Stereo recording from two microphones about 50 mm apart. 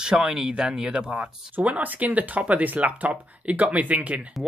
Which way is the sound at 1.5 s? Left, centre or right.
Right.